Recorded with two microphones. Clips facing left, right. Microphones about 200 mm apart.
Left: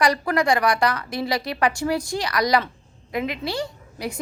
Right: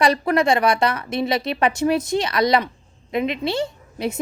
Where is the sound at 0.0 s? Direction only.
25° right (ahead or behind).